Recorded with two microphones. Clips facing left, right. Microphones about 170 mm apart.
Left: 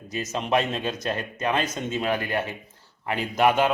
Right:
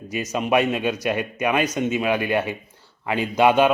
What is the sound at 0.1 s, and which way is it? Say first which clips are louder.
Speech: right 3 dB; 15° right (ahead or behind).